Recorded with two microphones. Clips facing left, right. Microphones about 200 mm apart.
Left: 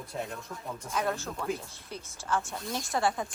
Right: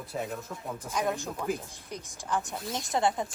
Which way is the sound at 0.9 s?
15° right (ahead or behind).